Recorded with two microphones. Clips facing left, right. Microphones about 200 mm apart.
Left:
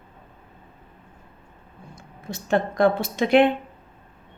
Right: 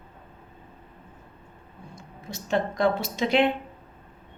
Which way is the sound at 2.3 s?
55° left (ahead or behind).